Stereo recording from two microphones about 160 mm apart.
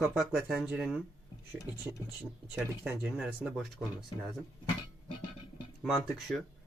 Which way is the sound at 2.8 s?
10° right (ahead or behind).